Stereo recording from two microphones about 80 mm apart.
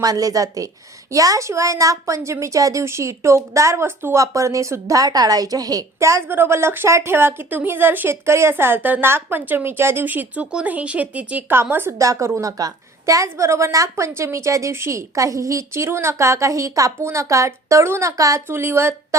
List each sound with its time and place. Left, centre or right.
0.0 s a woman's voice: right
6.0 s a woman's voice: right
12.0 s a woman's voice: right